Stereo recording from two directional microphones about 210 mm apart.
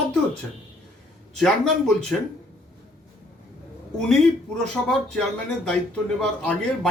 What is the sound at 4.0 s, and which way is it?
Speech, centre (ahead or behind).